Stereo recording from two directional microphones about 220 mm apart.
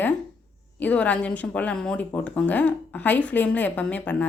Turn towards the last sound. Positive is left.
turn(degrees=5)  # may be behind; listen again after turning